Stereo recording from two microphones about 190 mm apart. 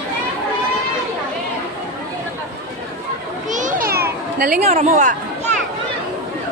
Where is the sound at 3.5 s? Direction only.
45° right (ahead or behind).